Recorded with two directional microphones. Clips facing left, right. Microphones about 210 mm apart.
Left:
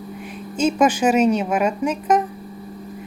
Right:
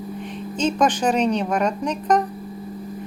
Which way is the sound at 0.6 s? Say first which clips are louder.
Left 3 dB; 10° left (ahead or behind).